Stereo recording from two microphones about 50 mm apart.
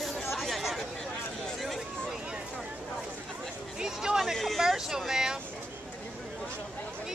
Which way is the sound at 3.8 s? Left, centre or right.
Centre.